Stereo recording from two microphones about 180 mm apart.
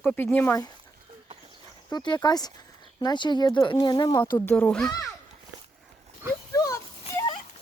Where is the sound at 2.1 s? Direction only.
20° left (ahead or behind).